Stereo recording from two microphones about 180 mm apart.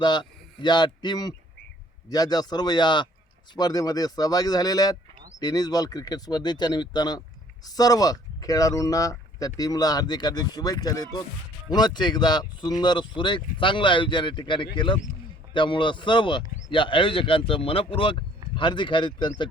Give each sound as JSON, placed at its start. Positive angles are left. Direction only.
{"t": 0.0, "sound": "a man's voice", "side_deg": 25}